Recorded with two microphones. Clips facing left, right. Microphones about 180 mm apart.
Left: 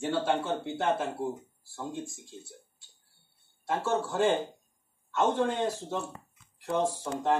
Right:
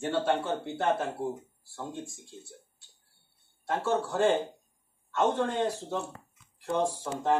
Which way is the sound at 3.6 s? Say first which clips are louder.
Right 1 dB; 5° left (ahead or behind).